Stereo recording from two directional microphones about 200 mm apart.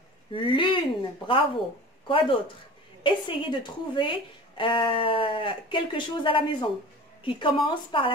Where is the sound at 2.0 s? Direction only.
25° left (ahead or behind).